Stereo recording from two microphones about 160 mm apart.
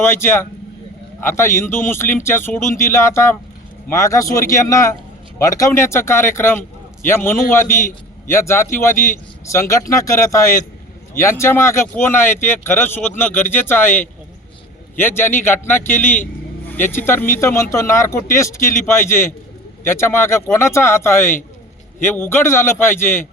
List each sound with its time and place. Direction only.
0.0 s speech: 15° left (ahead or behind)